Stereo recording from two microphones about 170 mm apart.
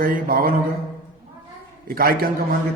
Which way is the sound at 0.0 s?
60° right (ahead or behind).